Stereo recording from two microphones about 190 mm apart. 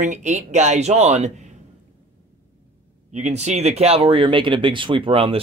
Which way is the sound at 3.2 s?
40° right (ahead or behind).